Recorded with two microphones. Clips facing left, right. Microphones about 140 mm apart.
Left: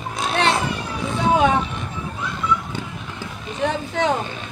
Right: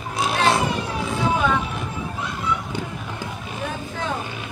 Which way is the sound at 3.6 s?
75° left (ahead or behind).